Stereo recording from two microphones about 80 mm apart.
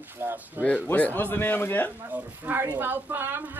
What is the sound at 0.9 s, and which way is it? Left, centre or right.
A man's voice, left.